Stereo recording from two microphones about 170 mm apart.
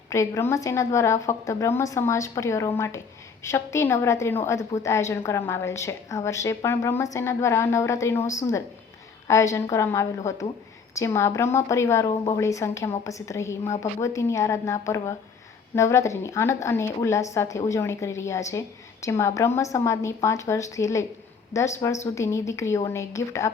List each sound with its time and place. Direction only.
0.1 s a woman's voice: 15° left (ahead or behind)